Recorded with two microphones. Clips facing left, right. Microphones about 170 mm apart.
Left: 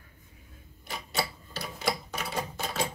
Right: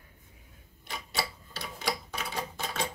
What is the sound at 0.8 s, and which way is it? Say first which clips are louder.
Tick-tock: left 2 dB; centre (ahead or behind).